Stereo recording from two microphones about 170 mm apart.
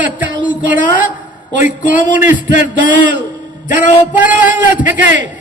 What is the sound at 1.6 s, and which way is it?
A man's voice, 50° left (ahead or behind).